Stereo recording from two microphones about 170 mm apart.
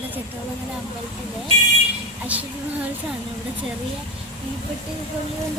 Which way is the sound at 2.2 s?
10° right (ahead or behind).